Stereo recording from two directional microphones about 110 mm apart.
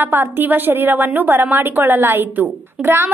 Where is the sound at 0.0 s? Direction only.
20° right (ahead or behind).